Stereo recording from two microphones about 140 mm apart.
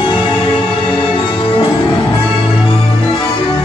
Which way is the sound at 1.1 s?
35° left (ahead or behind).